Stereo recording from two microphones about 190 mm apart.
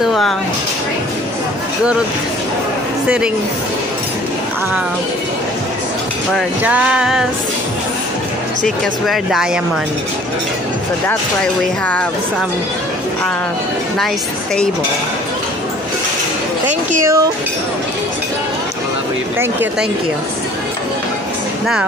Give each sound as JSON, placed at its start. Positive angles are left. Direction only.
{"t": 0.0, "sound": "a sound", "side_deg": 0}
{"t": 6.6, "sound": "speech", "side_deg": -5}
{"t": 8.6, "sound": "speech", "side_deg": 0}
{"t": 17.0, "sound": "speech", "side_deg": -15}